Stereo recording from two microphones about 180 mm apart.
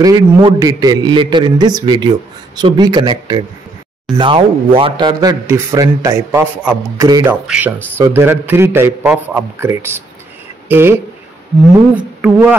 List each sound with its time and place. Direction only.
0.0 s speech: 20° right (ahead or behind)
7.4 s a man's voice: 5° right (ahead or behind)